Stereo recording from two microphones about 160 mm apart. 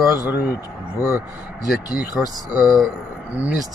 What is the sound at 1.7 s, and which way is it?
Speech, 60° left (ahead or behind).